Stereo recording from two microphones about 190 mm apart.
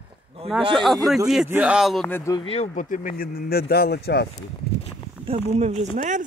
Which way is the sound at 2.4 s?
30° left (ahead or behind).